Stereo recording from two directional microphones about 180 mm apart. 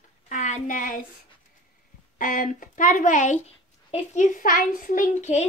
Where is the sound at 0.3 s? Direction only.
45° left (ahead or behind).